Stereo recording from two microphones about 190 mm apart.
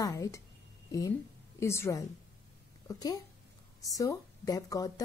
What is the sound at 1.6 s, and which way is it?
A woman's voice, 15° left (ahead or behind).